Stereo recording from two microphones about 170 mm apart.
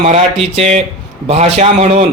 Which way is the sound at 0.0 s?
40° right (ahead or behind).